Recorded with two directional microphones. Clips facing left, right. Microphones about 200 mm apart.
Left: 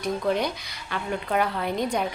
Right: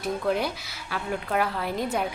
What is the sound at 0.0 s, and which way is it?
Speech, 5° right (ahead or behind).